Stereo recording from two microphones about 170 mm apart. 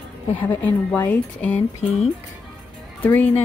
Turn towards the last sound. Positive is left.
turn(degrees=10)  # may be behind; listen again after turning